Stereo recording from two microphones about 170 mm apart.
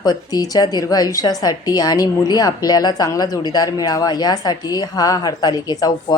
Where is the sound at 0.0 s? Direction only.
25° left (ahead or behind).